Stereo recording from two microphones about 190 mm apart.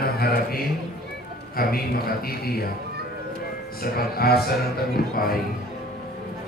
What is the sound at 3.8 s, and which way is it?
A man's voice, 55° left (ahead or behind).